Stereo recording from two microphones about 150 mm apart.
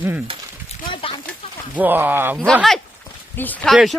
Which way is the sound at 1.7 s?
10° right (ahead or behind).